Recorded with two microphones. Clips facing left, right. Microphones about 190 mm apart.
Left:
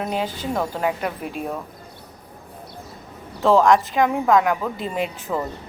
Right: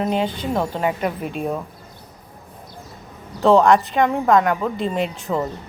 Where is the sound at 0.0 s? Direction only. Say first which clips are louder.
Right 4 dB; 5° left (ahead or behind).